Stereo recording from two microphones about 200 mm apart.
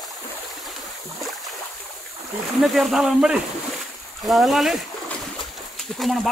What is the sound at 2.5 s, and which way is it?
Speech, centre (ahead or behind).